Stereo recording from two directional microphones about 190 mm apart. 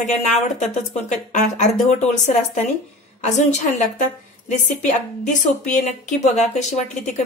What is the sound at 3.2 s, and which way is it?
A woman's voice, 40° left (ahead or behind).